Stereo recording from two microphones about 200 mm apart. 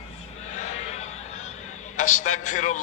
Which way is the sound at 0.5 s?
35° left (ahead or behind).